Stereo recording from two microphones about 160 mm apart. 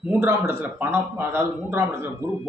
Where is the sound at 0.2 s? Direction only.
15° right (ahead or behind).